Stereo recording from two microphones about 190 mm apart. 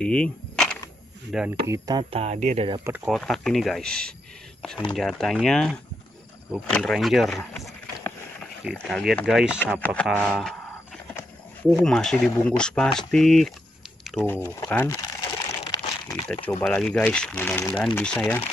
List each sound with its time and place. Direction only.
0.0 s a sound: 5° left (ahead or behind)
1.3 s speech: centre (ahead or behind)
1.7 s speech: 20° right (ahead or behind)
3.1 s speech: centre (ahead or behind)
9.8 s speech: 10° left (ahead or behind)
11.7 s speech: 5° left (ahead or behind)
14.0 s crumpling: 5° left (ahead or behind)
16.6 s speech: centre (ahead or behind)